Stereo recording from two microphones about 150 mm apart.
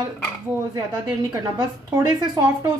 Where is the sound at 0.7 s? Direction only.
25° right (ahead or behind).